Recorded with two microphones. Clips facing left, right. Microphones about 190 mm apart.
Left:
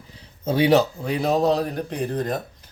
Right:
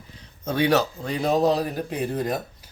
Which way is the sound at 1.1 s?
Centre (ahead or behind).